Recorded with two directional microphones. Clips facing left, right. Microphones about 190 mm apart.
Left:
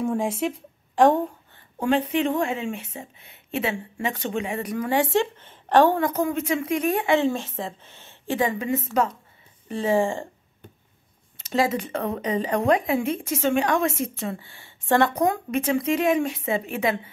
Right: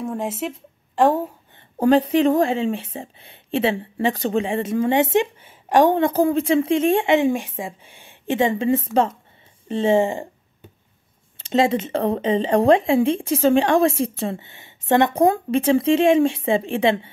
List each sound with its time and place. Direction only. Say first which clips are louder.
0.0 s a woman's voice: left 2 dB; centre (ahead or behind)
1.8 s a woman's voice: right 6 dB; 35° right (ahead or behind); by 5.9 s 15° right (ahead or behind)
5.9 s speech: right 6 dB; 30° right (ahead or behind)
7.2 s a woman's voice: right 4 dB; 15° right (ahead or behind)
8.4 s speech: right 5 dB; 25° right (ahead or behind)
11.3 s speech: right 4 dB; 25° right (ahead or behind)